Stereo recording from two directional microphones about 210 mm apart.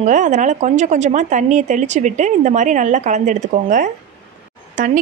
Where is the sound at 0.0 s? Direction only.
35° right (ahead or behind).